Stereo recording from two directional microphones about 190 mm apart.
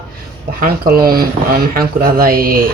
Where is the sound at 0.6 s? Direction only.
50° right (ahead or behind).